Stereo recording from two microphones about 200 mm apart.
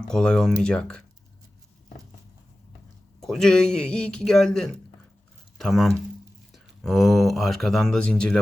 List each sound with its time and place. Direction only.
0.1 s speech: 5° left (ahead or behind)
3.2 s speech: centre (ahead or behind)